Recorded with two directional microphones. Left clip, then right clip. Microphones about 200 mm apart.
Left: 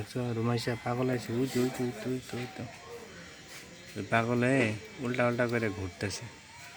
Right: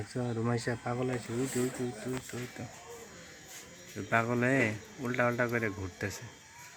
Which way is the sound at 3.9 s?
5° left (ahead or behind).